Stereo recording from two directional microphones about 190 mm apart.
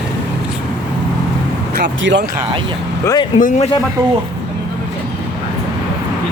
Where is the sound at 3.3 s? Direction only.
45° left (ahead or behind).